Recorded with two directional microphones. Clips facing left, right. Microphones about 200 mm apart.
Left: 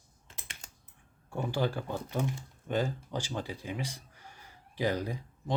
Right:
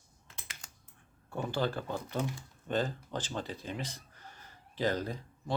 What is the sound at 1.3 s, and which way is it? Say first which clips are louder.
Speech: left 1 dB; 10° left (ahead or behind).